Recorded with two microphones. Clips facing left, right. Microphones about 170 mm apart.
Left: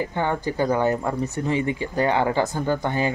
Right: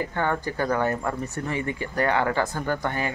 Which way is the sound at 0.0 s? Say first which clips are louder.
Left 2 dB; 20° left (ahead or behind).